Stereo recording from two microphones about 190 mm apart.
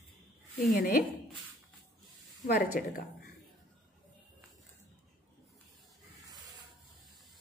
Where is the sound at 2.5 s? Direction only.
50° left (ahead or behind).